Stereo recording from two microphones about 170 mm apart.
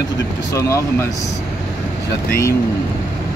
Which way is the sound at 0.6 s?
15° left (ahead or behind).